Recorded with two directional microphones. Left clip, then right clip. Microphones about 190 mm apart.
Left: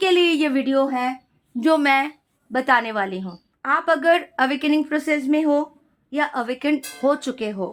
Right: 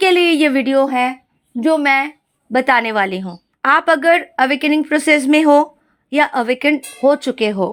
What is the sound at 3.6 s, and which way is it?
Speech, 40° right (ahead or behind).